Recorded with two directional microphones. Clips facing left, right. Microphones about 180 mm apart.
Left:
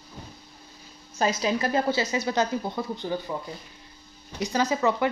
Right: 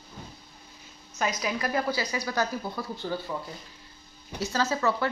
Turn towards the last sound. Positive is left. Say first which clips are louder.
# left 3 dB
turn(degrees=15)  # may be behind; listen again after turning